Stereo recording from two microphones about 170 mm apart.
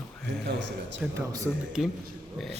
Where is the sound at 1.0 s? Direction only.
15° right (ahead or behind).